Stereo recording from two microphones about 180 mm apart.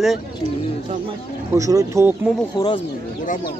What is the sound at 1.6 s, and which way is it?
Speech, 20° right (ahead or behind).